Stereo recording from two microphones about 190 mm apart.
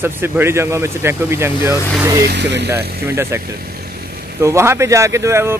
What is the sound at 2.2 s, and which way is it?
Speech, 60° right (ahead or behind).